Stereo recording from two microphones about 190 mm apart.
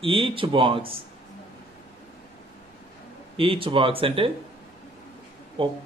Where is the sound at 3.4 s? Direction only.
30° right (ahead or behind).